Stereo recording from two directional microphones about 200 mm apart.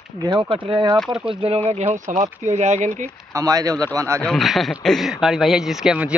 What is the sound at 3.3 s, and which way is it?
Speech, 15° right (ahead or behind).